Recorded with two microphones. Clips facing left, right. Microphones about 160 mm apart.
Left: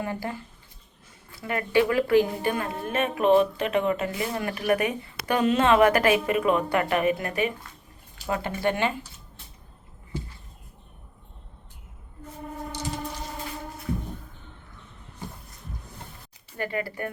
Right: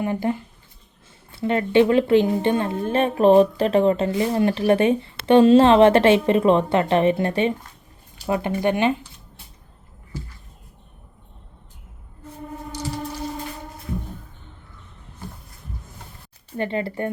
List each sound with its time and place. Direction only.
0.0 s a woman's voice: 20° right (ahead or behind)
8.3 s a woman's voice: 20° right (ahead or behind)
16.6 s a woman's voice: 25° right (ahead or behind)